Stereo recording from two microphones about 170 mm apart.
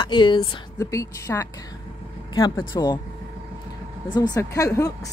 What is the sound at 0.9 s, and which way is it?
Speech, 20° left (ahead or behind).